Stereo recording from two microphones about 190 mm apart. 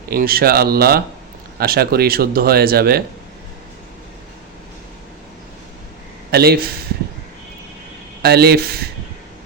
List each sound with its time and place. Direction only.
0.1 s speech: 50° right (ahead or behind)
6.3 s speech: 55° right (ahead or behind)
8.2 s speech: 55° right (ahead or behind)